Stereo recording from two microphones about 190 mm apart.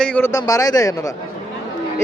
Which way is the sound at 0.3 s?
20° left (ahead or behind).